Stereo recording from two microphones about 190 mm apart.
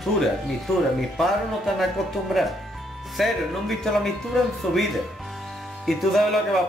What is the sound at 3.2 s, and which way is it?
Speech, centre (ahead or behind).